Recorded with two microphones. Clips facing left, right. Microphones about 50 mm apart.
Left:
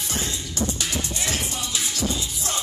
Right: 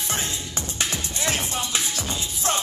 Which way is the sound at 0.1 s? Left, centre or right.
Right.